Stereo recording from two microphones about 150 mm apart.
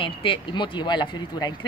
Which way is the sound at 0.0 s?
35° left (ahead or behind).